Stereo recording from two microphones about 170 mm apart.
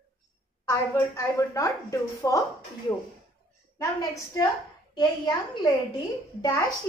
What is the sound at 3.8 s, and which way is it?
A woman's voice, 20° left (ahead or behind).